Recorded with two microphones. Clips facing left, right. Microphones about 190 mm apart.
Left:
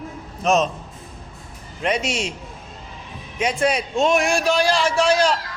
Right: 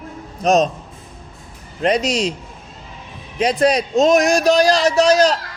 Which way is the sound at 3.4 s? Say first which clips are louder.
Right 5 dB; 35° right (ahead or behind).